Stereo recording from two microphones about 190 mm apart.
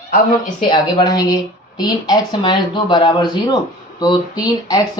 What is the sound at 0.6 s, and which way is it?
Speech, 25° left (ahead or behind).